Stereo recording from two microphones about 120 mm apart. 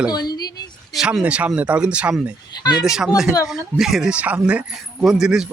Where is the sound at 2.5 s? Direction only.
35° left (ahead or behind).